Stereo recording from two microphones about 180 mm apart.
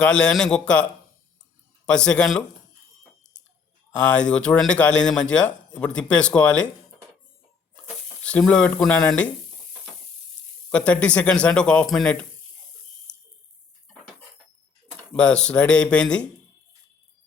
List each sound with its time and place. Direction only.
0.0 s speech: 5° left (ahead or behind)
1.9 s speech: 5° left (ahead or behind)
4.1 s speech: 5° left (ahead or behind)
8.2 s speech: 5° left (ahead or behind)
10.7 s speech: 5° left (ahead or behind)
13.1 s water: 5° left (ahead or behind)
15.1 s speech: 5° left (ahead or behind)